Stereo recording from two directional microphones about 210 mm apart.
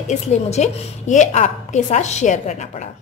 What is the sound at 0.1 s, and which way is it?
A woman's voice, 35° left (ahead or behind).